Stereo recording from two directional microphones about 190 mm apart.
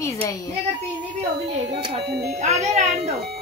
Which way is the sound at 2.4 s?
35° right (ahead or behind).